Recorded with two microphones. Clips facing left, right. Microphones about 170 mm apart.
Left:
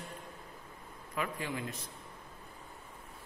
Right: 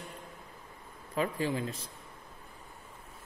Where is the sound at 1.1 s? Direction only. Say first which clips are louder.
Right 6 dB; 30° right (ahead or behind).